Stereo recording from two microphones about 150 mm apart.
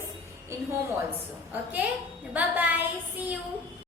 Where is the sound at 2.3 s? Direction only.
10° right (ahead or behind).